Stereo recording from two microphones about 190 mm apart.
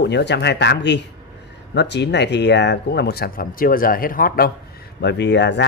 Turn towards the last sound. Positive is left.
turn(degrees=65)  # may be behind; listen again after turning